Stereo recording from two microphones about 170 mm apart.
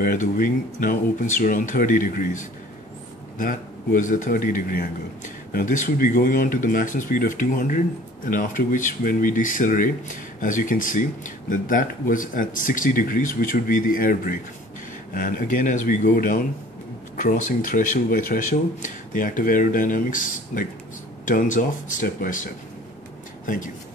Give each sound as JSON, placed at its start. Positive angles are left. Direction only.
{"t": 0.0, "sound": "speech", "side_deg": 55}